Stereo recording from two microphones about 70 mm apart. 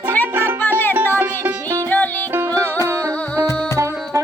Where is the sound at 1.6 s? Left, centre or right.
Right.